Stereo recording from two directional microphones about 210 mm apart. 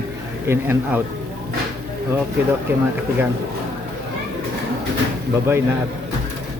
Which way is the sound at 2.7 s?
10° right (ahead or behind).